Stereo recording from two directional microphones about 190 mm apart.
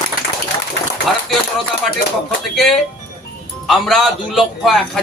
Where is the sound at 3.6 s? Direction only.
Centre (ahead or behind).